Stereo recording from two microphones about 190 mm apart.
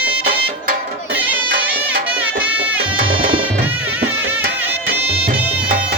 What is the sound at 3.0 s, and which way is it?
Music, 25° right (ahead or behind).